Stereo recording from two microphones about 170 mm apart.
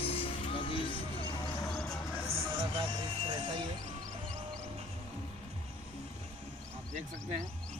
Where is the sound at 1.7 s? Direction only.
5° left (ahead or behind).